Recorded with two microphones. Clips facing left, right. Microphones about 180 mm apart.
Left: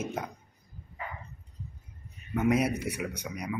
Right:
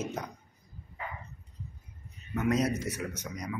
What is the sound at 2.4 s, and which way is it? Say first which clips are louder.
Speech: left 2 dB; 10° left (ahead or behind).